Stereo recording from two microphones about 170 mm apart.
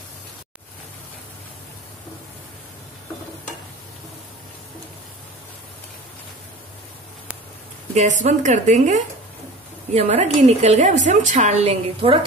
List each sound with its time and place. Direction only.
7.9 s a woman's voice: 45° right (ahead or behind)